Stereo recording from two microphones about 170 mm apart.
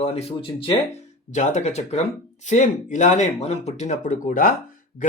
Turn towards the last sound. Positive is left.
turn(degrees=50)  # may be behind; listen again after turning